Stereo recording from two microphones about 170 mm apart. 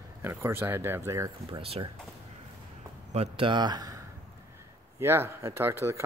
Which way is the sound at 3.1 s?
35° right (ahead or behind).